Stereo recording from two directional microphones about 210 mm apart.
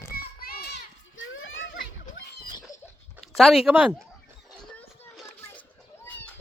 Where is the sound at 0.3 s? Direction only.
45° left (ahead or behind).